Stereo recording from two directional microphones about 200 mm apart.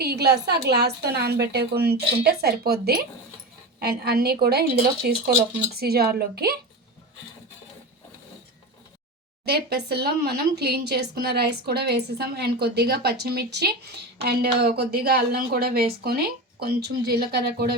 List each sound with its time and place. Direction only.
0.0 s speech: 55° right (ahead or behind)
9.5 s speech: 55° right (ahead or behind)